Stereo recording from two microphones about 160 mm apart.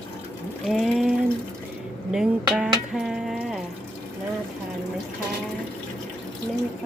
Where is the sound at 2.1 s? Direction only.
5° right (ahead or behind).